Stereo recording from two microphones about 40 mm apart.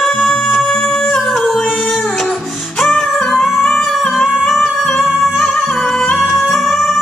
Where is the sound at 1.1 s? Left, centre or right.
Centre.